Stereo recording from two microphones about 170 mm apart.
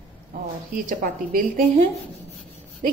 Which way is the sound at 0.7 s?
55° right (ahead or behind).